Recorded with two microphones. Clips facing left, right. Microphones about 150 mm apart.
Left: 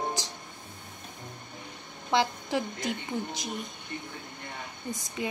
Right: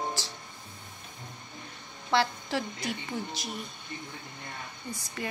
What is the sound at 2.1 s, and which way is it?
A woman's voice, 15° left (ahead or behind).